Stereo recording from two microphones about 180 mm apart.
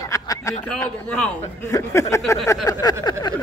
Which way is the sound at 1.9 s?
15° left (ahead or behind).